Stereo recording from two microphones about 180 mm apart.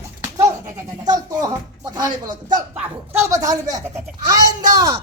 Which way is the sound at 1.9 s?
25° right (ahead or behind).